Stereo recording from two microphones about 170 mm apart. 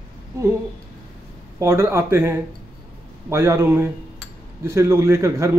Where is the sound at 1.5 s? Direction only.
15° right (ahead or behind).